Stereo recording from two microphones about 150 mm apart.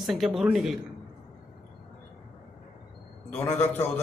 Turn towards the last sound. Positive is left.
turn(degrees=15)  # may be behind; listen again after turning